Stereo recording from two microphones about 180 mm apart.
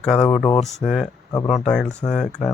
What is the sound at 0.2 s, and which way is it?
Speech, 30° left (ahead or behind).